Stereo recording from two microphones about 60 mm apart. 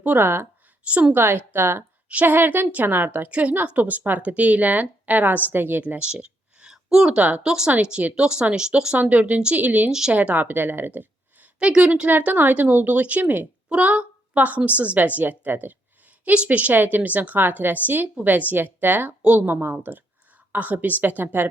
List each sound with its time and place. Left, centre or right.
0.0 s a woman's voice: right
1.1 s a woman's voice: right
3.2 s a woman's voice: right
6.0 s a sound: centre
7.2 s a woman's voice: right
7.4 s a woman's voice: centre; by 11.4 s right
11.6 s a woman's voice: centre